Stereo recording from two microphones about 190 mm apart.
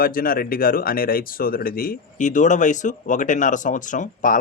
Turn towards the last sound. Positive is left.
turn(degrees=45)  # may be behind; listen again after turning